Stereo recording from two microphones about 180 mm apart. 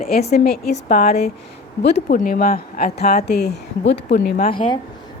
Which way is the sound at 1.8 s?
70° left (ahead or behind).